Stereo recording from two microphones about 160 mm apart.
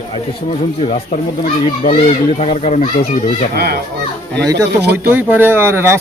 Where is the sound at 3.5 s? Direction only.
90° right.